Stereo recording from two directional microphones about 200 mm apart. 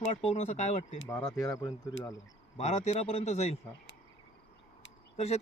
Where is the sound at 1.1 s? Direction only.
20° left (ahead or behind).